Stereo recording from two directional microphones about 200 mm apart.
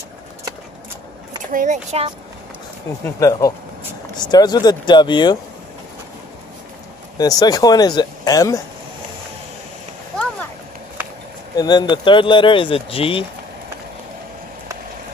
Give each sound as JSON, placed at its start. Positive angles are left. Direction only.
{"t": 1.5, "sound": "speech", "side_deg": -40}
{"t": 3.2, "sound": "speech", "side_deg": 15}
{"t": 7.2, "sound": "speech", "side_deg": 20}
{"t": 11.5, "sound": "speech", "side_deg": 20}